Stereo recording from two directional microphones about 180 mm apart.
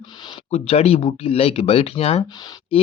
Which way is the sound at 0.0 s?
25° left (ahead or behind).